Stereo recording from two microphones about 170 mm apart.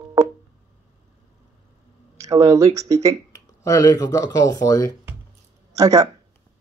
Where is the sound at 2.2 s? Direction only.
20° right (ahead or behind).